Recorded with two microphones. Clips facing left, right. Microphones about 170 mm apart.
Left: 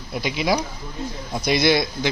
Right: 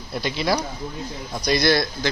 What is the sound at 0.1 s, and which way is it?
A man's voice, 10° left (ahead or behind).